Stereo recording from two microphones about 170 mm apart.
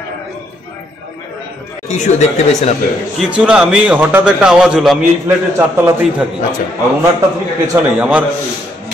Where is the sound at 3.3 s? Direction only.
5° right (ahead or behind).